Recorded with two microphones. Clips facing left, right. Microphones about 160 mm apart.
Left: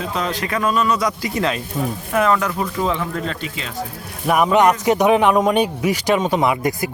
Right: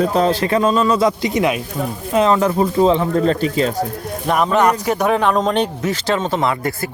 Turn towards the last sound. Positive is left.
turn(degrees=15)  # may be behind; listen again after turning